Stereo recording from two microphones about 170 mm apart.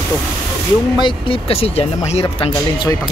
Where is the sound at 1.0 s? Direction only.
30° left (ahead or behind).